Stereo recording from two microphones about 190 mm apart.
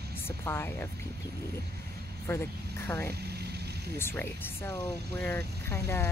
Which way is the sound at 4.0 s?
10° left (ahead or behind).